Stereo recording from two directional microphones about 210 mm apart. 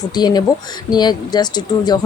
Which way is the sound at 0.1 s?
20° left (ahead or behind).